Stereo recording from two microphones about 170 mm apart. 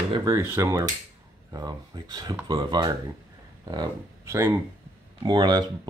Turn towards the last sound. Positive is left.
turn(degrees=-25)  # may be behind; listen again after turning